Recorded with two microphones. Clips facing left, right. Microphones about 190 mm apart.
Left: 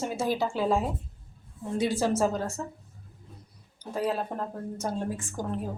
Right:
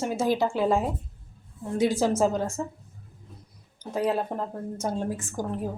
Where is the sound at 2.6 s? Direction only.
15° right (ahead or behind).